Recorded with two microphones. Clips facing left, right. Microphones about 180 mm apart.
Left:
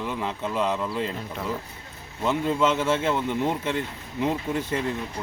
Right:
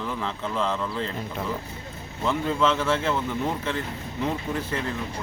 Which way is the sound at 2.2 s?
15° left (ahead or behind).